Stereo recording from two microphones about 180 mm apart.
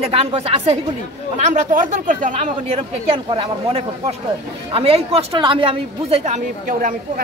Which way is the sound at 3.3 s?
30° right (ahead or behind).